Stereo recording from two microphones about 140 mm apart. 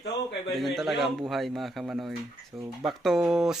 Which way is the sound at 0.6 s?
Centre (ahead or behind).